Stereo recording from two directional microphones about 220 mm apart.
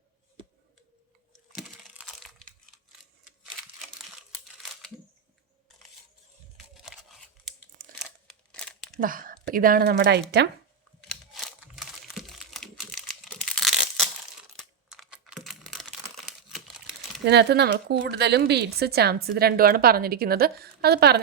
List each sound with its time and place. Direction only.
0.4 s a sound: 20° right (ahead or behind)
1.5 s crack: 5° right (ahead or behind)
3.0 s crumpling: centre (ahead or behind)
6.8 s tearing: centre (ahead or behind)
7.8 s crumpling: 40° right (ahead or behind)
8.3 s scissors: centre (ahead or behind)
9.0 s speech: 40° right (ahead or behind)
11.3 s crumpling: centre (ahead or behind)
14.6 s computer keyboard: centre (ahead or behind)
17.2 s speech: 50° right (ahead or behind)